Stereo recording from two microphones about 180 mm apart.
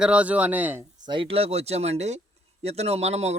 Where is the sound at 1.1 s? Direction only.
30° right (ahead or behind).